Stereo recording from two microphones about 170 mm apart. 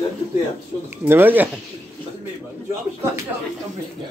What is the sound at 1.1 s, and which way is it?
Speech, 10° right (ahead or behind).